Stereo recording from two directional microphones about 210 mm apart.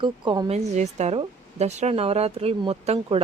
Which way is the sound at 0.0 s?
25° right (ahead or behind).